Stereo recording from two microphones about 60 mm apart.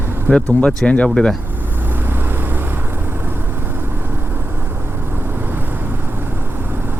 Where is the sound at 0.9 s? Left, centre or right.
Centre.